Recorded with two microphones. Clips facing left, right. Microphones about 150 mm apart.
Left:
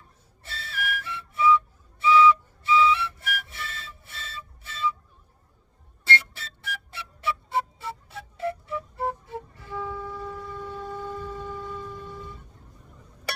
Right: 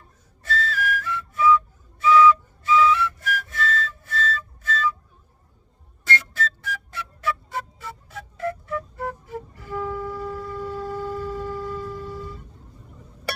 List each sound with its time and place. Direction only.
0.4 s whistle: 25° left (ahead or behind)
2.0 s flute: 25° left (ahead or behind)
6.1 s music: 30° left (ahead or behind)
10.1 s a sound: centre (ahead or behind)